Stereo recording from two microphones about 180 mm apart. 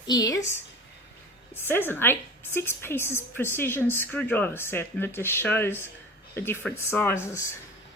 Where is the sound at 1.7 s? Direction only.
10° left (ahead or behind).